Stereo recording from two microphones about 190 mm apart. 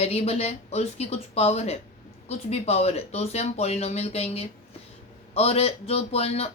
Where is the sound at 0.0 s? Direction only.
30° left (ahead or behind).